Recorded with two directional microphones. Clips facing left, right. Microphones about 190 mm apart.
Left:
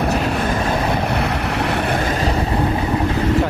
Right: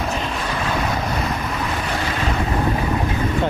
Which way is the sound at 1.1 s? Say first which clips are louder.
Left 4 dB; 70° left (ahead or behind).